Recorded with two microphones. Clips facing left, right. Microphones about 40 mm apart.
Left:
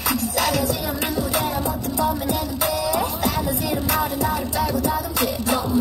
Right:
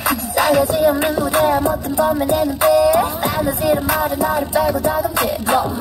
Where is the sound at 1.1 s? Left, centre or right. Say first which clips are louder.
Right 8 dB; right.